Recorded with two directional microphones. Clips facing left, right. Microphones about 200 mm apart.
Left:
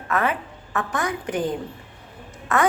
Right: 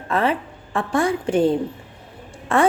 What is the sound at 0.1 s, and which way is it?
A woman's voice, 30° right (ahead or behind).